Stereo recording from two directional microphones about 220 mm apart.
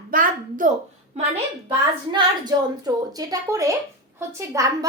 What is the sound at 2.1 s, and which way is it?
A woman's voice, 20° right (ahead or behind).